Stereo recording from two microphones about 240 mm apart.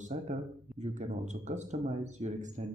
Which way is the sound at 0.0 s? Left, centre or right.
Right.